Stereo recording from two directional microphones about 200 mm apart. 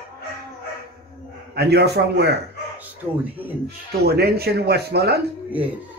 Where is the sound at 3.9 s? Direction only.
50° right (ahead or behind).